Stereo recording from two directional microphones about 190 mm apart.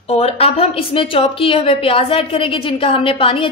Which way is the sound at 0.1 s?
30° left (ahead or behind).